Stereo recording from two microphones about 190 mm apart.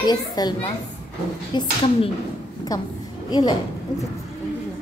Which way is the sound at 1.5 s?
30° left (ahead or behind).